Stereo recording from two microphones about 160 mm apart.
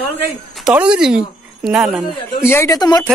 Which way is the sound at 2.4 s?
15° left (ahead or behind).